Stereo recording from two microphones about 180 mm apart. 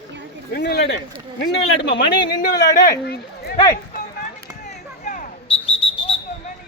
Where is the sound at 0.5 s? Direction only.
65° left (ahead or behind).